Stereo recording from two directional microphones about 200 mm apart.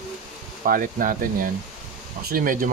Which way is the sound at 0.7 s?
45° right (ahead or behind).